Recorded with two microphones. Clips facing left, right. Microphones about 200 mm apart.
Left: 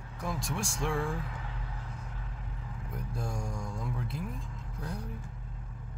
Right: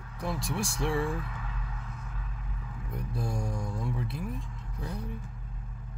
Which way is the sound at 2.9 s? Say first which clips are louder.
Right 3 dB; centre (ahead or behind).